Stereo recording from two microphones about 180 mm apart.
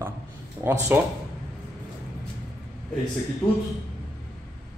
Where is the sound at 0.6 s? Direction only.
10° right (ahead or behind).